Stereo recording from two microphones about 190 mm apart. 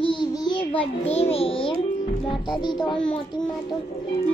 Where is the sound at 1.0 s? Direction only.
30° left (ahead or behind).